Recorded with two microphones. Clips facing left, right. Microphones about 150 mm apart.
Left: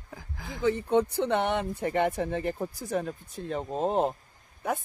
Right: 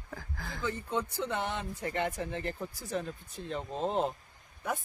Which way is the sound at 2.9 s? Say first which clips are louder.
Left 4 dB; 50° left (ahead or behind).